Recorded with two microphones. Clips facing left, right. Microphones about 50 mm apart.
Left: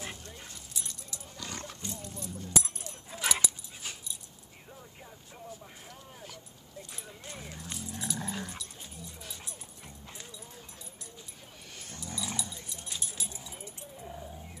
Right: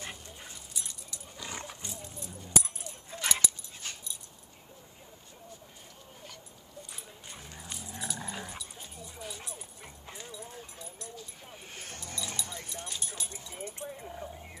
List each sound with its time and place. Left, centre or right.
0.0 s dog: centre
1.4 s roaring cats: centre
2.4 s dog: centre
6.9 s dog: centre
10.4 s horse: centre
11.7 s dog: right
12.2 s dog: centre
12.4 s dog: right
12.8 s clip-clop: centre
13.6 s keys jangling: right